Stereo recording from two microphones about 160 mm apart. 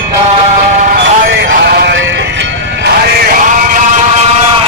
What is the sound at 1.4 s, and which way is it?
Music, 75° right (ahead or behind).